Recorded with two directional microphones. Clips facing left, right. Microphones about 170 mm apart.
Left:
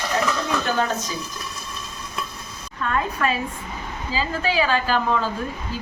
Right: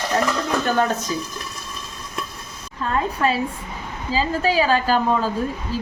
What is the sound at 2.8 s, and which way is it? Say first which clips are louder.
A woman's voice: right 2 dB; 30° right (ahead or behind).